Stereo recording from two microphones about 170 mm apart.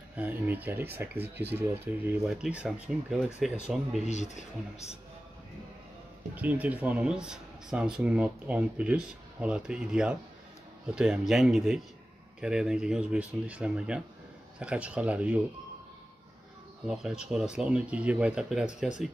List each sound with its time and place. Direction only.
0.1 s speech: 10° right (ahead or behind)
1.1 s speech: 75° right (ahead or behind)
1.5 s speech: 10° right (ahead or behind)
4.0 s speech: 45° left (ahead or behind)
6.3 s speech: 10° right (ahead or behind)
16.8 s speech: 5° right (ahead or behind)